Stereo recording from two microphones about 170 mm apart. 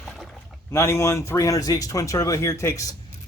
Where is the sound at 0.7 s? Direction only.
15° left (ahead or behind).